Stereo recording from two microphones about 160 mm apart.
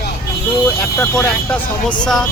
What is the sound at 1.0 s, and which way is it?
Speech, 10° left (ahead or behind).